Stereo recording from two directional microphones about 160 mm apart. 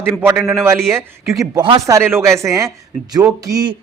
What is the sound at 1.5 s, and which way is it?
Speech, 35° right (ahead or behind).